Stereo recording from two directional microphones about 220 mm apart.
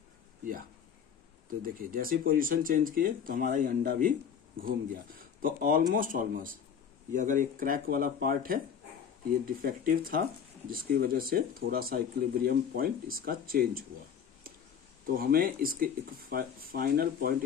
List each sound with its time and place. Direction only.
1.6 s speech: 40° right (ahead or behind)
9.6 s speech: 40° right (ahead or behind)
15.1 s speech: 40° right (ahead or behind)